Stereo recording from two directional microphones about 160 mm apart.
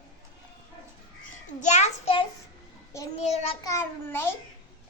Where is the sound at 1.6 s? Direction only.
45° left (ahead or behind).